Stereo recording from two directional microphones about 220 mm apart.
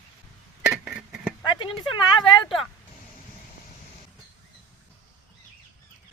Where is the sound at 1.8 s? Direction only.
20° left (ahead or behind).